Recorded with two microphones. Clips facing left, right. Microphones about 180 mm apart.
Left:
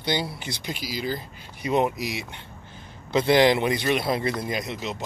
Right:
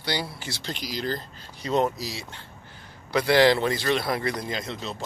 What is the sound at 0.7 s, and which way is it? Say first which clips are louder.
A man's voice: even; 5° left (ahead or behind).